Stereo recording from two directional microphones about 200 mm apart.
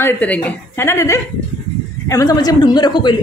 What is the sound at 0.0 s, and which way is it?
Speech, 10° left (ahead or behind).